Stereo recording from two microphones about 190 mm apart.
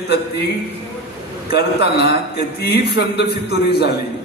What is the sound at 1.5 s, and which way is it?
A man's voice, 60° left (ahead or behind).